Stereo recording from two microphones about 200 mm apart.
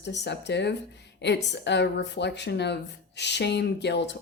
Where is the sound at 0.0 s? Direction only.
60° left (ahead or behind).